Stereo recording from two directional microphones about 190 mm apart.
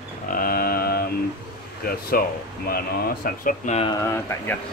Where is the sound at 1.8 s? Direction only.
50° left (ahead or behind).